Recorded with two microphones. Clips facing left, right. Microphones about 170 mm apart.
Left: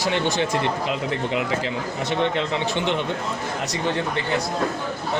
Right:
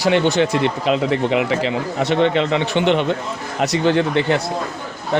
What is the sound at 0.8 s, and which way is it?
A man's voice, 80° right.